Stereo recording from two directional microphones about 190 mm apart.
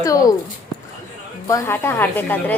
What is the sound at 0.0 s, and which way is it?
Speech, 20° left (ahead or behind).